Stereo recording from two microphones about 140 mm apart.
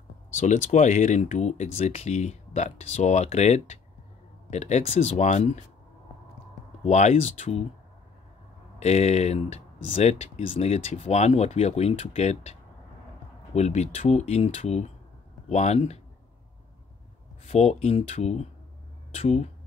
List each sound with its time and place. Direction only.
0.4 s speech: 60° left (ahead or behind)
6.8 s speech: 55° left (ahead or behind)
8.7 s speech: 50° left (ahead or behind)
13.6 s speech: 50° left (ahead or behind)
17.5 s speech: 50° left (ahead or behind)